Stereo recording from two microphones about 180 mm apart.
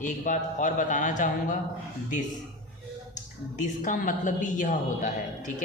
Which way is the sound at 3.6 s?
45° left (ahead or behind).